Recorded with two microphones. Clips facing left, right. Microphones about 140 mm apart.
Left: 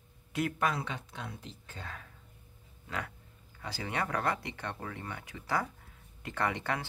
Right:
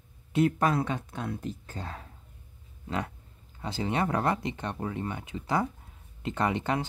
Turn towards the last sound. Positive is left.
turn(degrees=-20)  # may be behind; listen again after turning